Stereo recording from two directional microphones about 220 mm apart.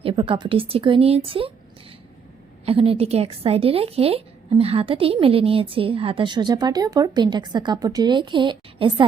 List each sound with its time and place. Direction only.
0.0 s a woman's voice: 25° right (ahead or behind)
2.6 s a woman's voice: 25° right (ahead or behind)